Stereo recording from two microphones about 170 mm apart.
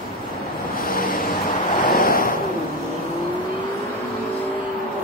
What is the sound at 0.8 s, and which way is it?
Vehicle, 60° left (ahead or behind).